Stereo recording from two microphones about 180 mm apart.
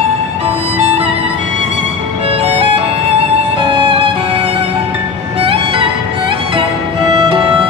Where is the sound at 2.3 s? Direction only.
30° right (ahead or behind).